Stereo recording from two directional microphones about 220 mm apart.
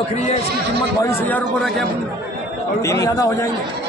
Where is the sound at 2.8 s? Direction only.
15° left (ahead or behind).